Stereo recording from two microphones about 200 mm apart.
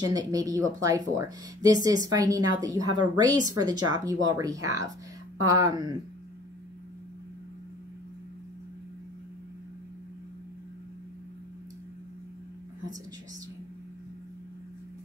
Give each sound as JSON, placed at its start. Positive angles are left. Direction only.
{"t": 0.0, "sound": "a woman's voice", "side_deg": -20}